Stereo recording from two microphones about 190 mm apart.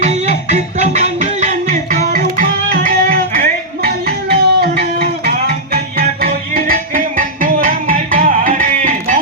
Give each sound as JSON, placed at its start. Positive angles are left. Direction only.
{"t": 0.0, "sound": "music", "side_deg": -35}